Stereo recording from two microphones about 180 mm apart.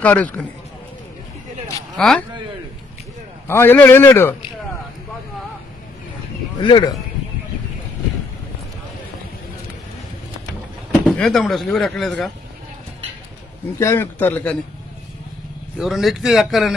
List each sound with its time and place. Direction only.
0.0 s a man's voice: 10° left (ahead or behind)
2.0 s speech: 5° left (ahead or behind)
3.4 s a man's voice: 10° left (ahead or behind)
6.6 s speech: 25° left (ahead or behind)
10.9 s speech: centre (ahead or behind)
13.7 s a man's voice: 15° left (ahead or behind)
15.8 s speech: centre (ahead or behind)